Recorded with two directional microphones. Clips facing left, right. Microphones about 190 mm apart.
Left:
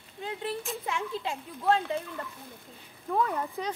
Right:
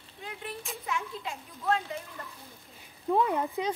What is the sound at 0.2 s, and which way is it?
Speech, 30° left (ahead or behind).